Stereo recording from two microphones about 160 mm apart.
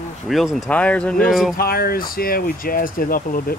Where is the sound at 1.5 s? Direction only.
70° left (ahead or behind).